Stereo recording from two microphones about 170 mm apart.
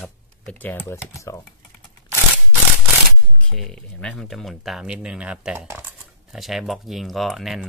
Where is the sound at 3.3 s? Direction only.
5° left (ahead or behind).